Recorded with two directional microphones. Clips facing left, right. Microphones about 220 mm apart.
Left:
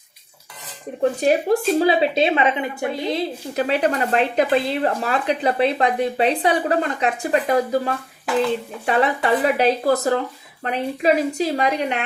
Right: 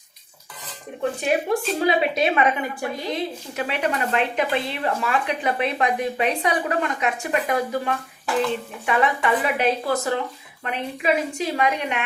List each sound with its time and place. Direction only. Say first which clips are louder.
1.2 s a woman's voice: left 4 dB; 35° left (ahead or behind)
3.5 s speech: left 6 dB; 35° left (ahead or behind)